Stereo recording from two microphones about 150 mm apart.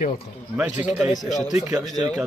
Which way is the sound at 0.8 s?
5° right (ahead or behind).